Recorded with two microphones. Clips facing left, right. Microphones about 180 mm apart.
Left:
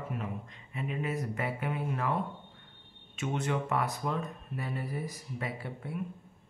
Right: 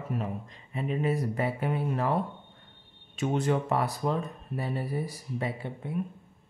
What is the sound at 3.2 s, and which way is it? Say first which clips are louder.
Speech: right 5 dB; 35° right (ahead or behind).